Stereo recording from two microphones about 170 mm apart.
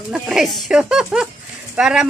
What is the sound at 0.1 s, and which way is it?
Speech, centre (ahead or behind).